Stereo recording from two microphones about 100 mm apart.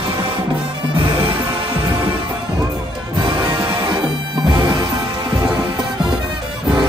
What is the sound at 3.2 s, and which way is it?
Music, 50° right (ahead or behind).